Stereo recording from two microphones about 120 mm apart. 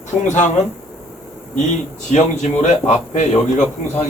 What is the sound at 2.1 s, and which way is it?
A man's voice, 80° left.